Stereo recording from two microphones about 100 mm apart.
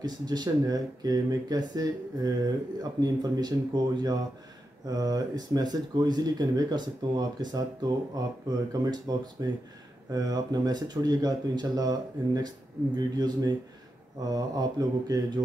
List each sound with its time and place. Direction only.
0.0 s speech: 45° right (ahead or behind)